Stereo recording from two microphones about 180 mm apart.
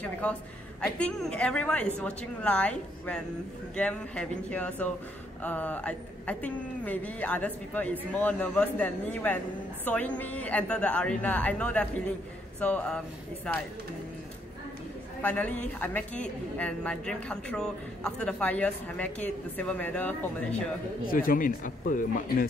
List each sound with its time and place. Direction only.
0.0 s a woman's voice: 5° left (ahead or behind)
15.2 s a woman's voice: 10° left (ahead or behind)
21.1 s speech: 50° left (ahead or behind)